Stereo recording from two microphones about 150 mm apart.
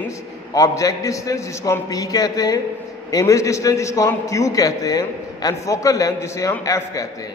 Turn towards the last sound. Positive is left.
turn(degrees=20)  # may be behind; listen again after turning